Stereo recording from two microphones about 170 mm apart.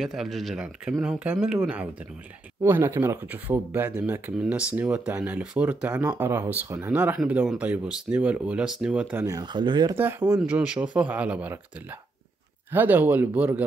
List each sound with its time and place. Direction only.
0.0 s speech: centre (ahead or behind)
9.2 s speech: 20° right (ahead or behind)
9.9 s speech: 10° right (ahead or behind)
12.7 s speech: 10° right (ahead or behind)